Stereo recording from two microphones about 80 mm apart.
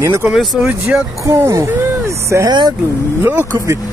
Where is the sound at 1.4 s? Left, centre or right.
Right.